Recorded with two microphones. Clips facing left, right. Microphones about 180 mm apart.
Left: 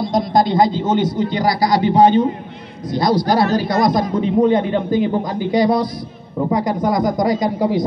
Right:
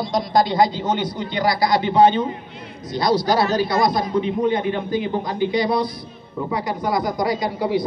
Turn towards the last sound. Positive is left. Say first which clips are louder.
# left 4 dB
turn(degrees=45)  # may be behind; listen again after turning